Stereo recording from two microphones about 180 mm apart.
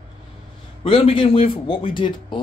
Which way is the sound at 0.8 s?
30° left (ahead or behind).